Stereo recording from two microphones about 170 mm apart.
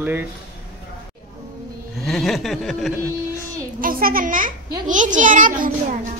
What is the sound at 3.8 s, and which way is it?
A child's voice, 60° right (ahead or behind).